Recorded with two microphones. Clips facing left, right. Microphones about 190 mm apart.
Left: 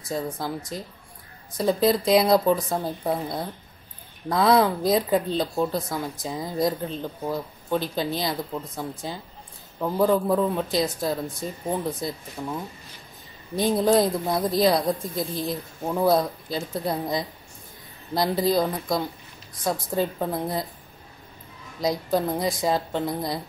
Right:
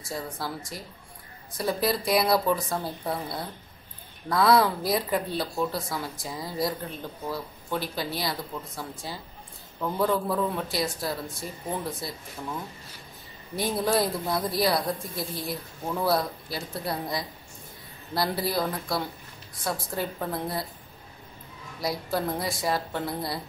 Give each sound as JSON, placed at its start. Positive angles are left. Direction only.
{"t": 0.1, "sound": "speech", "side_deg": 20}
{"t": 12.4, "sound": "speech", "side_deg": 15}
{"t": 13.6, "sound": "speech", "side_deg": 20}
{"t": 21.8, "sound": "speech", "side_deg": 20}